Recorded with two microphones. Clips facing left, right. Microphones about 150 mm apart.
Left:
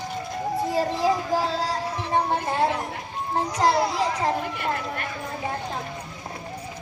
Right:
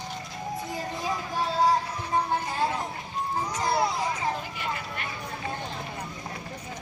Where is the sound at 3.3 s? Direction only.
90° left.